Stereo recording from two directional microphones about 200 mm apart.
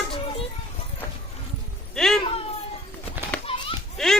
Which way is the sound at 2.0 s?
Centre (ahead or behind).